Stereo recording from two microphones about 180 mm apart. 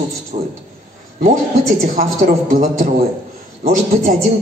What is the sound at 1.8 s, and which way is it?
A man's voice, 50° right (ahead or behind).